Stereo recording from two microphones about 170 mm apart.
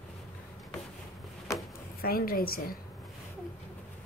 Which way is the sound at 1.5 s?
20° left (ahead or behind).